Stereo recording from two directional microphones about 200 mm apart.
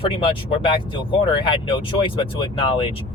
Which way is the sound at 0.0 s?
25° left (ahead or behind).